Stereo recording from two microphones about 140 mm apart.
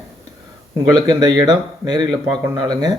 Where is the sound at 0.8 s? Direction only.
25° right (ahead or behind).